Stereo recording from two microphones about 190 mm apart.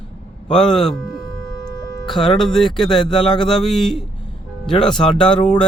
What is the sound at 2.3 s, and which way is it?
Speech, centre (ahead or behind).